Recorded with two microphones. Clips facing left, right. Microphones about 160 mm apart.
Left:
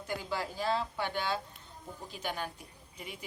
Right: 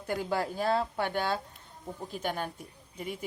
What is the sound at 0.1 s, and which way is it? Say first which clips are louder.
A woman's voice: right 6 dB; 50° right (ahead or behind).